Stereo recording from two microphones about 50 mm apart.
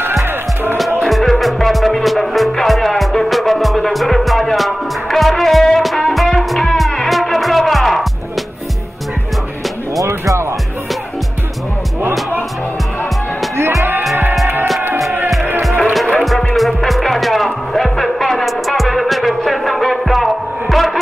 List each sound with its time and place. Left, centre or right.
1.0 s music: centre
10.0 s music: right
13.6 s music: right
15.6 s music: centre